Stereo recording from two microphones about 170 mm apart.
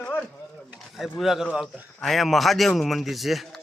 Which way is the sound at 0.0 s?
5° left (ahead or behind).